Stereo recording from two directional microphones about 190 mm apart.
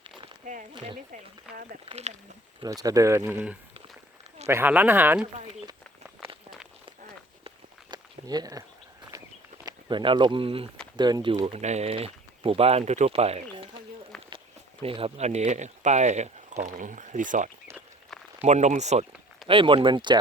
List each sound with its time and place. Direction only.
1.1 s speech: 45° right (ahead or behind)
1.8 s speech: 35° right (ahead or behind)
2.6 s speech: 20° right (ahead or behind)
7.4 s a sound: 20° right (ahead or behind)
9.1 s walk: 15° right (ahead or behind)
9.6 s speech: 25° right (ahead or behind); by 17.5 s 40° right (ahead or behind)
18.1 s a sound: centre (ahead or behind)
18.4 s speech: 35° right (ahead or behind)